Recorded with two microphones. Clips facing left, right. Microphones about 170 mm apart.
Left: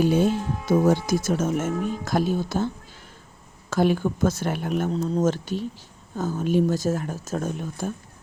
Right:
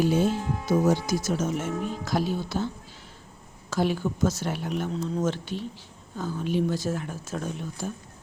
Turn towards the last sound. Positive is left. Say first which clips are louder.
# left 4 dB
turn(degrees=50)  # may be behind; listen again after turning